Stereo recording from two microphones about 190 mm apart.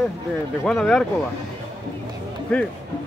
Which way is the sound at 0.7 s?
Centre (ahead or behind).